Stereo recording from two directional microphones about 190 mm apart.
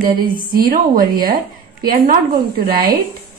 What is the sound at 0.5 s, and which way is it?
Speech, 50° right (ahead or behind).